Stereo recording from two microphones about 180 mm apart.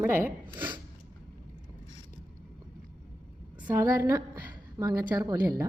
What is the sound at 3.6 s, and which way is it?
A woman's voice, 15° right (ahead or behind).